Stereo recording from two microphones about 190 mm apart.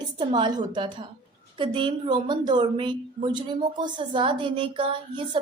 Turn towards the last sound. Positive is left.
turn(degrees=-25)  # may be behind; listen again after turning